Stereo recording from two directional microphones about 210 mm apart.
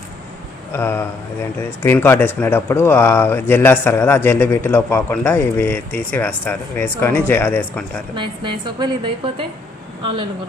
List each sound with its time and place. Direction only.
0.7 s speech: 10° left (ahead or behind)
8.1 s a woman's voice: 20° right (ahead or behind)